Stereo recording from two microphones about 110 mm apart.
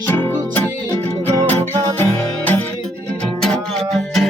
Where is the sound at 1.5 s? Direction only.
20° left (ahead or behind).